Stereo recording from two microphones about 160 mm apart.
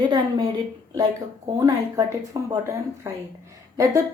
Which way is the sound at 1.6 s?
20° right (ahead or behind).